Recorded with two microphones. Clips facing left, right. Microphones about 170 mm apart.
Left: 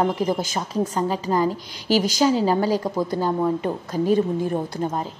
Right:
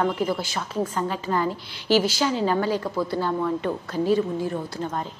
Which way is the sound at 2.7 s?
15° left (ahead or behind).